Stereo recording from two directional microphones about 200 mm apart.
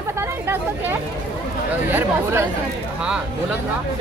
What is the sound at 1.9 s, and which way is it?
Speech, 10° right (ahead or behind).